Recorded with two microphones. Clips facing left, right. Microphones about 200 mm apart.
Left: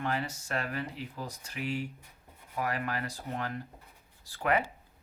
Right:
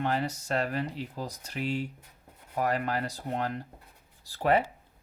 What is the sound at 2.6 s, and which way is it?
Speech, 35° right (ahead or behind).